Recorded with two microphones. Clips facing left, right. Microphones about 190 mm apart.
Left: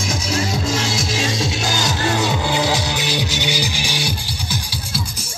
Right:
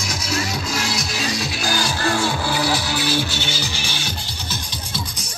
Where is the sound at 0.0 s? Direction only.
30° left (ahead or behind).